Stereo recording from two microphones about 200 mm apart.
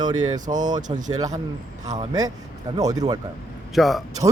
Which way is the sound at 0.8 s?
40° right (ahead or behind).